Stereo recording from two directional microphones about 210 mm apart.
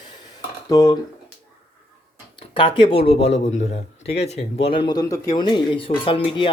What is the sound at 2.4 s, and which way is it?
Speech, 25° left (ahead or behind).